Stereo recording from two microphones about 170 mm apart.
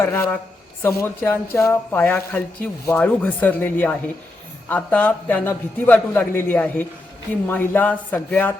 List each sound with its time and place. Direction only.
0.0 s a man's voice: 15° left (ahead or behind)